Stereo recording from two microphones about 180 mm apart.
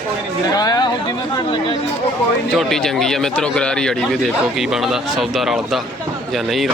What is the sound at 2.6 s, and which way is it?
A man's voice, centre (ahead or behind).